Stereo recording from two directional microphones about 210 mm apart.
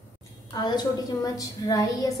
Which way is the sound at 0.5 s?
20° left (ahead or behind).